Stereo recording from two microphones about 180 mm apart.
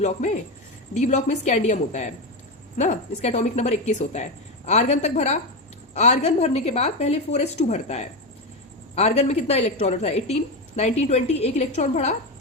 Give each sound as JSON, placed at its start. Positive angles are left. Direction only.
{"t": 0.2, "sound": "a woman's voice", "side_deg": 40}